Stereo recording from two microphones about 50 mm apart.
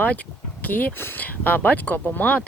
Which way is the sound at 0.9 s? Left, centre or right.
Left.